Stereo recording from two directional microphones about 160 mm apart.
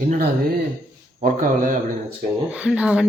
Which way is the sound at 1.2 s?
60° right (ahead or behind).